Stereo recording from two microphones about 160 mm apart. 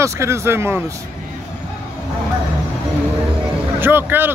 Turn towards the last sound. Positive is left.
turn(degrees=-10)  # may be behind; listen again after turning